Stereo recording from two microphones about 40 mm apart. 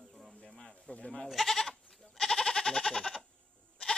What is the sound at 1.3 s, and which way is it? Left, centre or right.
Speech, centre.